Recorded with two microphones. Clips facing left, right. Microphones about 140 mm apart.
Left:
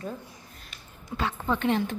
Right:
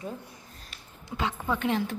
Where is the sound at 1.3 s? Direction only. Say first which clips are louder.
Left 3 dB; 5° right (ahead or behind).